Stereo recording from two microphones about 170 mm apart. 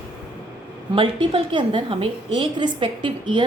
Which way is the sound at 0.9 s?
30° right (ahead or behind).